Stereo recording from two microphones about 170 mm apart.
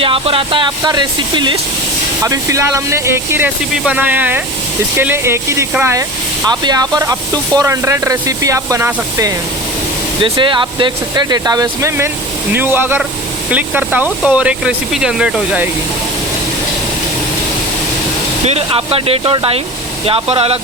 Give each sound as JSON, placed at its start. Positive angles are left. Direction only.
{"t": 0.0, "sound": "speech", "side_deg": -30}
{"t": 10.2, "sound": "speech", "side_deg": -30}
{"t": 18.4, "sound": "speech", "side_deg": -35}